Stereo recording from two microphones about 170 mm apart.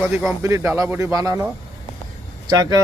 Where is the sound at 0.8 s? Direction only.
15° right (ahead or behind).